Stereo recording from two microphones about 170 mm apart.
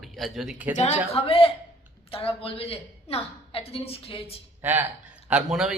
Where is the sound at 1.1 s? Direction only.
35° left (ahead or behind).